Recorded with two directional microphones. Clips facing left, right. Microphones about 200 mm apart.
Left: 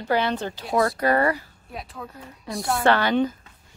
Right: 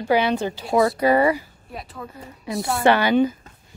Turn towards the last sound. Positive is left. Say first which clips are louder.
# right 3 dB
turn(degrees=-10)  # may be behind; listen again after turning